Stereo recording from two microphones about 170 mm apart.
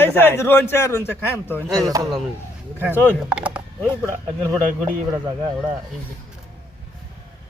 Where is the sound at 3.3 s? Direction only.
5° right (ahead or behind).